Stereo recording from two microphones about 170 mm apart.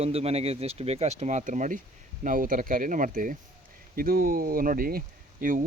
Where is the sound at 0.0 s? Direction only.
35° right (ahead or behind).